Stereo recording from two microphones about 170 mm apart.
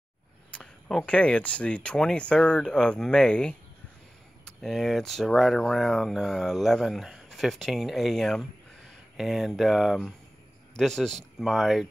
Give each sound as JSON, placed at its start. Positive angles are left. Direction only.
{"t": 0.5, "sound": "speech", "side_deg": 5}